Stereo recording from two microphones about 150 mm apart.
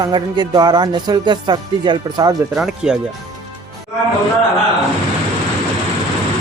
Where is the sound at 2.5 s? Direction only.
5° right (ahead or behind).